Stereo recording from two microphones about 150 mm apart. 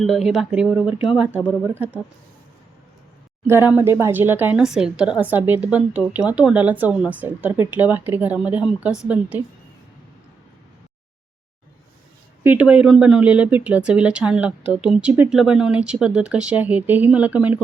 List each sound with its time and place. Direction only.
0.0 s speech: centre (ahead or behind)
3.4 s speech: 15° right (ahead or behind)
12.4 s speech: 10° right (ahead or behind)